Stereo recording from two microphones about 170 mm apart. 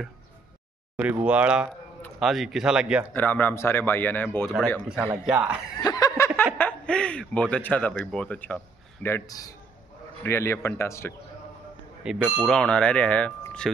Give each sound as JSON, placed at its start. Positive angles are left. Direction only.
{"t": 0.9, "sound": "speech", "side_deg": -10}
{"t": 3.1, "sound": "speech", "side_deg": 10}
{"t": 4.8, "sound": "speech", "side_deg": -5}
{"t": 5.9, "sound": "speech", "side_deg": 20}
{"t": 9.0, "sound": "a man's voice", "side_deg": 20}
{"t": 12.0, "sound": "speech", "side_deg": -5}
{"t": 12.5, "sound": "speech", "side_deg": 5}